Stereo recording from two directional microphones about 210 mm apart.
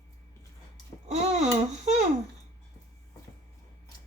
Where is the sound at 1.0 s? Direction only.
30° right (ahead or behind).